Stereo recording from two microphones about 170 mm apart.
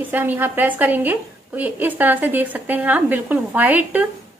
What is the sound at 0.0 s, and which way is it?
A woman's voice, 10° right (ahead or behind).